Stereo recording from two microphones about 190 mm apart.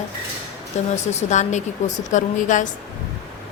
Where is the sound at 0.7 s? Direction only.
35° left (ahead or behind).